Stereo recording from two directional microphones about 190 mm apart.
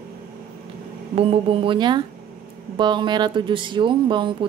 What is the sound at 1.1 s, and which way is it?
Speech, 30° right (ahead or behind).